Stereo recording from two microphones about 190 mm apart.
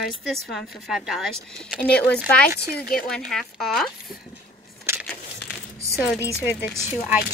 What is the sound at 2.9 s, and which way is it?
Speech, 5° left (ahead or behind).